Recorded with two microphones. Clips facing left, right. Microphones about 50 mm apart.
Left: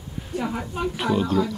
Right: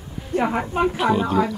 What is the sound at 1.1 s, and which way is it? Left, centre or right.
Speech, right.